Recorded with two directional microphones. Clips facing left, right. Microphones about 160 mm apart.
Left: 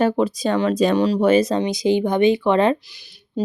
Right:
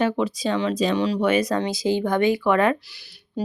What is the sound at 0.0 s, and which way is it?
Speech, 40° left (ahead or behind).